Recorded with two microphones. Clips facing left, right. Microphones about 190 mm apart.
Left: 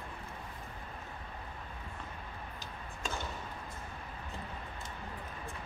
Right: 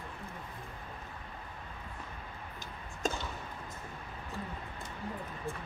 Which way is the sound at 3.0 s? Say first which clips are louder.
Right 6 dB; 45° right (ahead or behind).